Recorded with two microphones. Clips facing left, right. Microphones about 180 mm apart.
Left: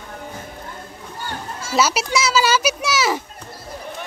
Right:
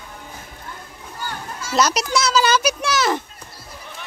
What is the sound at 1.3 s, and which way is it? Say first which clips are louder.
Children playing: left 2 dB; 30° left (ahead or behind).